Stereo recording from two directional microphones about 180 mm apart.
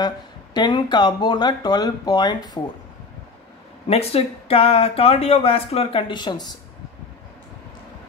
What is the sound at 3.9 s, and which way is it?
Speech, 35° left (ahead or behind).